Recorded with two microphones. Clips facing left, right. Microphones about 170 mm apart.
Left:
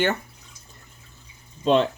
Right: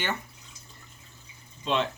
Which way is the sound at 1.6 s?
40° left (ahead or behind).